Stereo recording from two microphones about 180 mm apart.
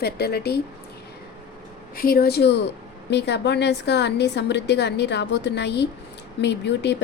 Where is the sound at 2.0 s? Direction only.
55° left (ahead or behind).